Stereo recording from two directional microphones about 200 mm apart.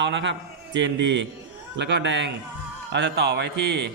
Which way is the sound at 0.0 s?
65° right (ahead or behind).